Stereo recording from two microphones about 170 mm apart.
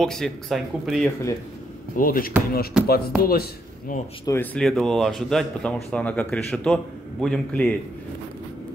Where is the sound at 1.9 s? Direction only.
55° left (ahead or behind).